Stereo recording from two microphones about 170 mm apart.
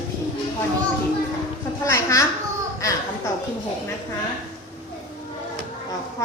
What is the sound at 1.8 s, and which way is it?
A woman's voice, 20° left (ahead or behind).